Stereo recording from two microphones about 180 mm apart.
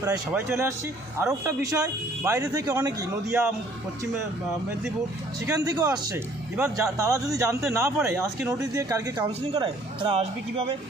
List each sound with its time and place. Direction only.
0.0 s a man's voice: 15° right (ahead or behind)
5.5 s a man's voice: 20° right (ahead or behind)